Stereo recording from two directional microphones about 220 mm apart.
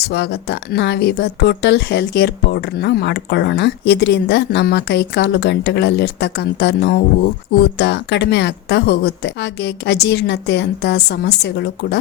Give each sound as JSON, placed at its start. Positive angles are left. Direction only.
{"t": 0.0, "sound": "speech", "side_deg": 50}